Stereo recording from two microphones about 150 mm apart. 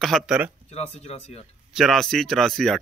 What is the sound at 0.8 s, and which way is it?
Speech, 45° left (ahead or behind).